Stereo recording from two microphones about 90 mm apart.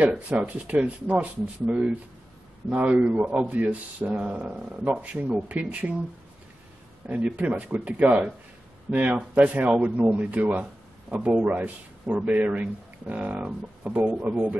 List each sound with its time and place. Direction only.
0.0 s speech: 15° right (ahead or behind)
7.1 s speech: 15° right (ahead or behind)